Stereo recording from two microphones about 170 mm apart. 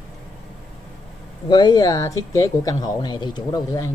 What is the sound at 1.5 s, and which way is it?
Speech, 25° left (ahead or behind).